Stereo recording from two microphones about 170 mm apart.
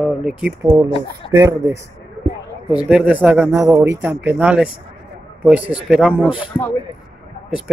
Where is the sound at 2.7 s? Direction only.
5° right (ahead or behind).